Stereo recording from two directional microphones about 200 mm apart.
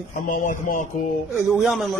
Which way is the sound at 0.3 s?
45° left (ahead or behind).